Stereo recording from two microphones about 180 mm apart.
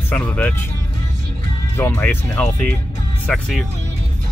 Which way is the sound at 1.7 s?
15° left (ahead or behind).